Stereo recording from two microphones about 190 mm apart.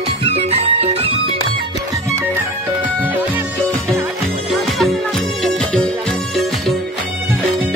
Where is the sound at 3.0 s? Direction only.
10° right (ahead or behind).